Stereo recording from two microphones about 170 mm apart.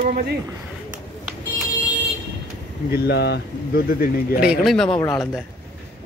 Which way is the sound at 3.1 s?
85° left.